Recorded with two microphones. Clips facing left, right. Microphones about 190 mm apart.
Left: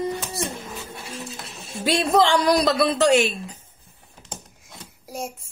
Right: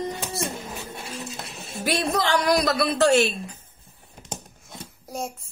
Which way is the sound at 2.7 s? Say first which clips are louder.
Left 2 dB; 15° left (ahead or behind).